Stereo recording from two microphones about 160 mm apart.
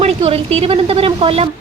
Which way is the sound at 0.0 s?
40° right (ahead or behind).